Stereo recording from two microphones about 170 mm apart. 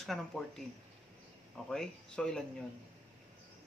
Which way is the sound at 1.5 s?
5° left (ahead or behind).